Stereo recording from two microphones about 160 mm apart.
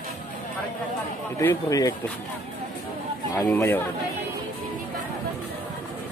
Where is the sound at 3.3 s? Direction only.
15° left (ahead or behind).